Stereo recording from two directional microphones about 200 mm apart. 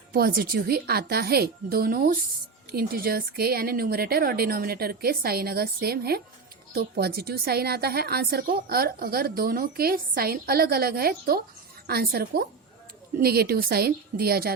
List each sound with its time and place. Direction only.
0.1 s a woman's voice: 50° right (ahead or behind)